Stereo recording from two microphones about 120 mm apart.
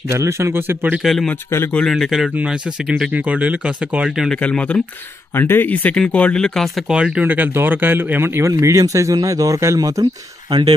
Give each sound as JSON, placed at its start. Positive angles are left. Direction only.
{"t": 0.1, "sound": "speech", "side_deg": -25}
{"t": 1.0, "sound": "a man's voice", "side_deg": 0}
{"t": 1.3, "sound": "a man's voice", "side_deg": 20}
{"t": 1.8, "sound": "a man's voice", "side_deg": 0}
{"t": 4.4, "sound": "speech", "side_deg": 10}